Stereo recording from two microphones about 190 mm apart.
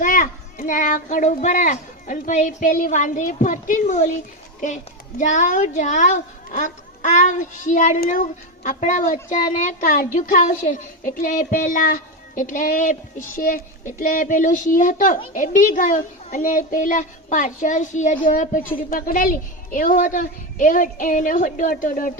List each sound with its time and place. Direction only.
0.0 s a woman's voice: 45° left (ahead or behind)